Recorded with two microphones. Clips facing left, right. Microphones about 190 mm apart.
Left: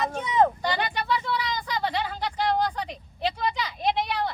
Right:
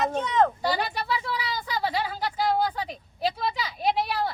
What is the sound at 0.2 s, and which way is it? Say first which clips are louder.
Vehicle: left 2 dB; 10° left (ahead or behind).